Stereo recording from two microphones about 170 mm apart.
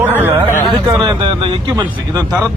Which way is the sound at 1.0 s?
25° right (ahead or behind).